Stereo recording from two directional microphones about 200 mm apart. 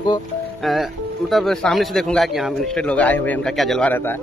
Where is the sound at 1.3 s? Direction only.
Centre (ahead or behind).